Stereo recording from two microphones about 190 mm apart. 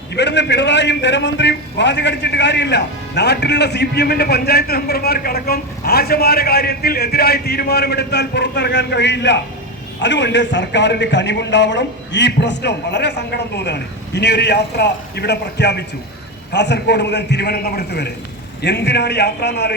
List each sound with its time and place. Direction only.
0.1 s a man's voice: 65° left (ahead or behind)